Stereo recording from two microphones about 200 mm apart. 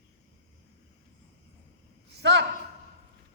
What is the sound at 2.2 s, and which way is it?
Speech, 60° right (ahead or behind).